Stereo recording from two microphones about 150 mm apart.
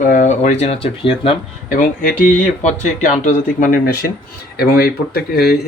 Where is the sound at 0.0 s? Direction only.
60° left (ahead or behind); by 1.4 s 40° left (ahead or behind).